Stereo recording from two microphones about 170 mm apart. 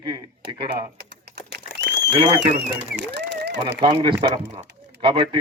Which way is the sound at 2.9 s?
90° right.